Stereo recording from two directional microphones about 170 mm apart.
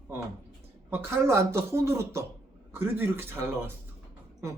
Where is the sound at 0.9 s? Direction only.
15° right (ahead or behind).